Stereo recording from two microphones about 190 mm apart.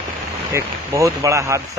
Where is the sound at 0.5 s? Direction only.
15° right (ahead or behind).